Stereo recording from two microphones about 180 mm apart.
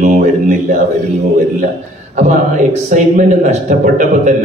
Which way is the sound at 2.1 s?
40° right (ahead or behind).